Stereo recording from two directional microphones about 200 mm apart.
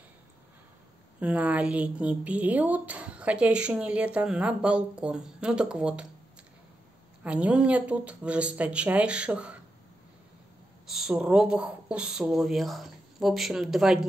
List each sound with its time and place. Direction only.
1.2 s a woman's voice: 5° right (ahead or behind)
7.2 s a woman's voice: 5° right (ahead or behind)
10.9 s speech: 5° right (ahead or behind)